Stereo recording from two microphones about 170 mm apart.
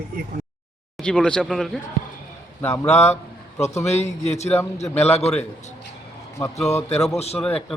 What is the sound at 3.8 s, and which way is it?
A man's voice, 40° left (ahead or behind).